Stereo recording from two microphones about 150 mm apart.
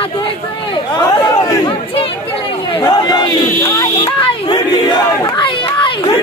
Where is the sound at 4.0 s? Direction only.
30° left (ahead or behind).